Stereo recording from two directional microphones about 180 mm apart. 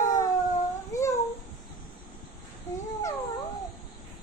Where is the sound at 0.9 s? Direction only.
15° left (ahead or behind).